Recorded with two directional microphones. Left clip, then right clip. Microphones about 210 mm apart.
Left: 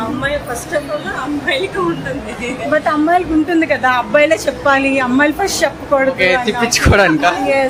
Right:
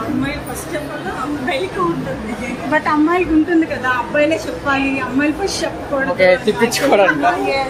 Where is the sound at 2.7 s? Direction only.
15° left (ahead or behind).